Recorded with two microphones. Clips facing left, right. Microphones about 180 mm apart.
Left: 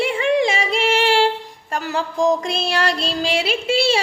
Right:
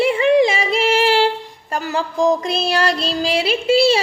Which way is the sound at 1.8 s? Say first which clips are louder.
Right 1 dB; centre (ahead or behind).